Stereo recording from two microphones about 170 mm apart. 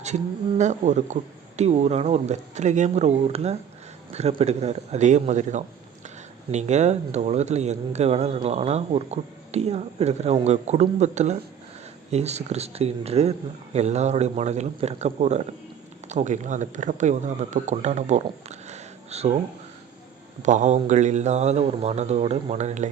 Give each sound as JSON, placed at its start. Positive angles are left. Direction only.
{"t": 0.6, "sound": "speech", "side_deg": -45}
{"t": 20.4, "sound": "speech", "side_deg": -45}